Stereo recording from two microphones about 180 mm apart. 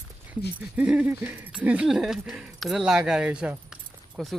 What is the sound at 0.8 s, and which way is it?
Speech, 5° right (ahead or behind).